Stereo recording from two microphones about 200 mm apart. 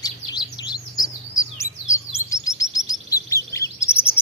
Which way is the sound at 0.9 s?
40° left (ahead or behind).